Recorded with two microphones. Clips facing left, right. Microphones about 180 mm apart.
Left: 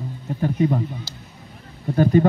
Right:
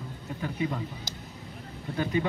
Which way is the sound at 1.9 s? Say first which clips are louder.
Left 11 dB; 40° left (ahead or behind).